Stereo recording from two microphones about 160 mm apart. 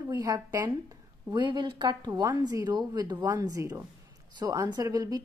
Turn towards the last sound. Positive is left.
turn(degrees=-20)  # may be behind; listen again after turning